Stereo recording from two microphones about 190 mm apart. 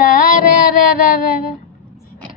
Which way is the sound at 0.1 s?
45° left (ahead or behind).